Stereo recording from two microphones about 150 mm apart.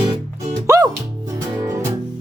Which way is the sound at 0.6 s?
20° right (ahead or behind).